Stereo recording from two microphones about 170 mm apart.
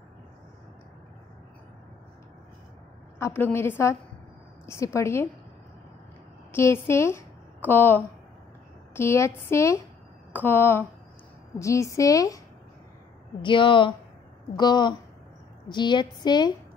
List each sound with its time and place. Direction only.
3.2 s a woman's voice: 15° left (ahead or behind)
6.5 s a woman's voice: 15° left (ahead or behind)
13.4 s a woman's voice: 30° left (ahead or behind)